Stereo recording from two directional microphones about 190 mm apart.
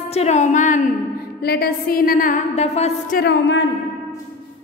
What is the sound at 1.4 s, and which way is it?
A woman's voice, 55° left (ahead or behind).